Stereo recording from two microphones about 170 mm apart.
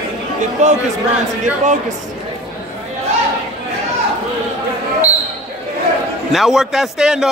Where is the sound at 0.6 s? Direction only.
45° right (ahead or behind).